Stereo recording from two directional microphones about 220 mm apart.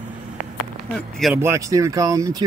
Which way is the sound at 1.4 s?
15° right (ahead or behind).